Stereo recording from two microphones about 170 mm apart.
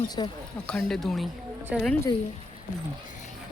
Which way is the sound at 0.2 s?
25° left (ahead or behind).